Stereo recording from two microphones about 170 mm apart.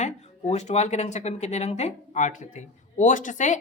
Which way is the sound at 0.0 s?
40° left (ahead or behind).